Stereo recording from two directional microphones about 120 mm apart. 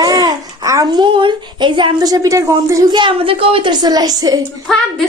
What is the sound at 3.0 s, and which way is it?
A woman's voice, 45° right (ahead or behind).